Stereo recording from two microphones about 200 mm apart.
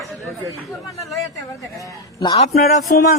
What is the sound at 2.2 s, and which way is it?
Speech, 20° left (ahead or behind).